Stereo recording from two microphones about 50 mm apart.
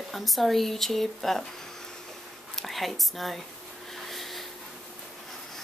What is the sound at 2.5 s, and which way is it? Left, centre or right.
Speech, centre.